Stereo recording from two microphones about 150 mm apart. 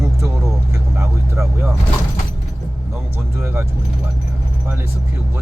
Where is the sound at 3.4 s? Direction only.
15° right (ahead or behind).